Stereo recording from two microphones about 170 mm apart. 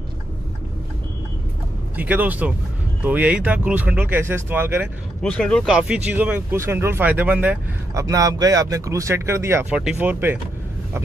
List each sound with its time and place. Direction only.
2.0 s speech: 10° right (ahead or behind)
5.2 s speech: 5° left (ahead or behind)
7.9 s speech: 20° right (ahead or behind)